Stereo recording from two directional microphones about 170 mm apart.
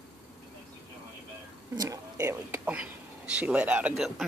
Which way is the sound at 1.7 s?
20° right (ahead or behind).